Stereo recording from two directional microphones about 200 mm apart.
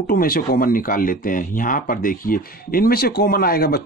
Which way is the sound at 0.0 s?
45° left (ahead or behind).